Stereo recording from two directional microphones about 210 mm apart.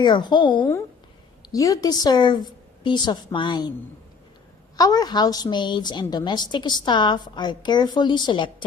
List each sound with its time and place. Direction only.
0.0 s a woman's voice: 20° left (ahead or behind)
4.8 s a woman's voice: 15° left (ahead or behind)